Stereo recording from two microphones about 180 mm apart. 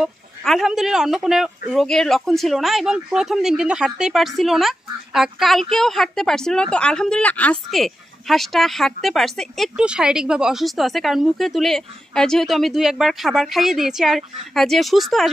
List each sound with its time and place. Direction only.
0.0 s speech: centre (ahead or behind)